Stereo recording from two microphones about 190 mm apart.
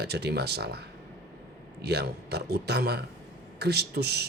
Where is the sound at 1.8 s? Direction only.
60° right (ahead or behind).